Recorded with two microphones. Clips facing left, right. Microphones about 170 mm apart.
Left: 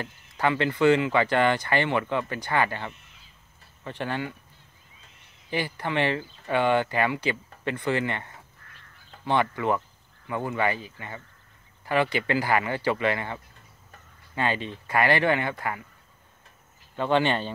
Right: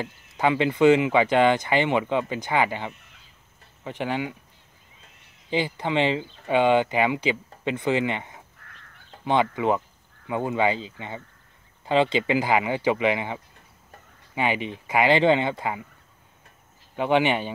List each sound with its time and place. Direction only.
0.0 s speech: 15° right (ahead or behind)
5.5 s speech: 20° right (ahead or behind)
16.9 s speech: 15° right (ahead or behind)